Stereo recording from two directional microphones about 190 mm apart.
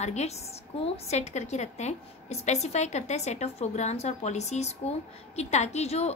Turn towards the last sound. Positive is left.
turn(degrees=35)  # may be behind; listen again after turning